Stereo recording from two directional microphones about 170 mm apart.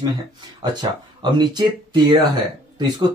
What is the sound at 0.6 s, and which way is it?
Speech, 25° right (ahead or behind).